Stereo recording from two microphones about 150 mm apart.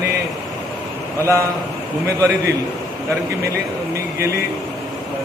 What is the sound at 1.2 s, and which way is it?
A man's voice, 20° right (ahead or behind).